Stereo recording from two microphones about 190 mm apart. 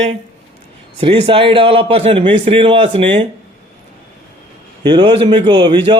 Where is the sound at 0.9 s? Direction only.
30° right (ahead or behind).